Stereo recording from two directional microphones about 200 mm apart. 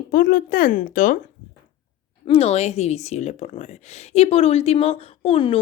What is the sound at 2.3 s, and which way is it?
Speech, 30° left (ahead or behind).